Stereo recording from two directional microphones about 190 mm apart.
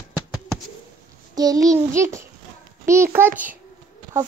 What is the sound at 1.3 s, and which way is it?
Child singing, 20° right (ahead or behind).